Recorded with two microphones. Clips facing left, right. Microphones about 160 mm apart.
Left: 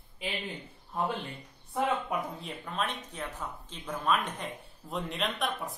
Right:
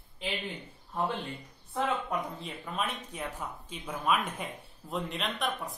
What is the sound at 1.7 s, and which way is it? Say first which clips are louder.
Speech: left 1 dB; centre (ahead or behind).